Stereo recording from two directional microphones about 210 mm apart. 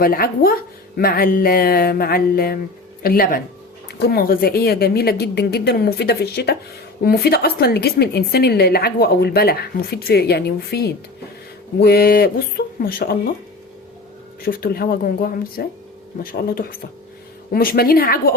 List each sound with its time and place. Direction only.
0.0 s a woman's voice: 45° left (ahead or behind)
14.4 s a woman's voice: 45° left (ahead or behind)